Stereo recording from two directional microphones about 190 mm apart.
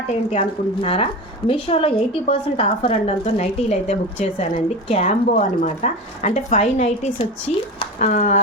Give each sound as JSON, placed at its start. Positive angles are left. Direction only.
{"t": 0.3, "sound": "a woman's voice", "side_deg": 30}
{"t": 7.5, "sound": "speech", "side_deg": 0}
{"t": 7.9, "sound": "a woman's voice", "side_deg": 45}